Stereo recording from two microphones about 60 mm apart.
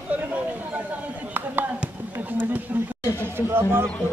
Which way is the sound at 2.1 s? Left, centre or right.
Right.